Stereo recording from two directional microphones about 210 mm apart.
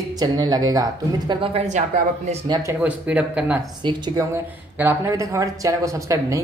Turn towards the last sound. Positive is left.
turn(degrees=-15)  # may be behind; listen again after turning